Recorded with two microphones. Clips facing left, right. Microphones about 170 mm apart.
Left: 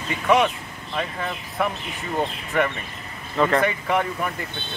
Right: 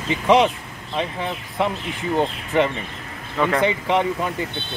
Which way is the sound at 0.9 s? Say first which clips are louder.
Right 3 dB; 20° right (ahead or behind).